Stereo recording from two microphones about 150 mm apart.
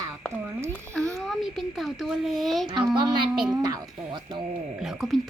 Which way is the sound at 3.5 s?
25° right (ahead or behind).